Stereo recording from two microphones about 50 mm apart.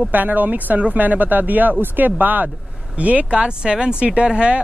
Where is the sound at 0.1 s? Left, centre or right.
Right.